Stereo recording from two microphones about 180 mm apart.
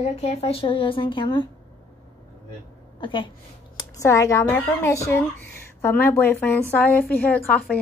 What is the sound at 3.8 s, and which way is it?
A woman's voice, 15° left (ahead or behind).